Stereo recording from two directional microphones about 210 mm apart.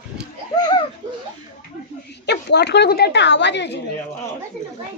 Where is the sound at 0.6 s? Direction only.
20° left (ahead or behind).